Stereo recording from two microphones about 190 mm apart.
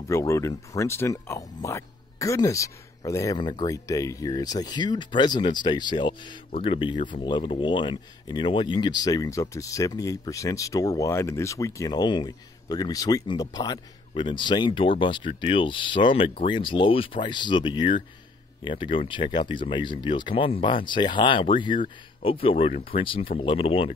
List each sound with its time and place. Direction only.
0.1 s speech: 15° left (ahead or behind)